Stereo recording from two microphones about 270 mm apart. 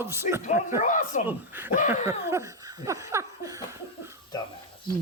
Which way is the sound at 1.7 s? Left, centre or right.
Left.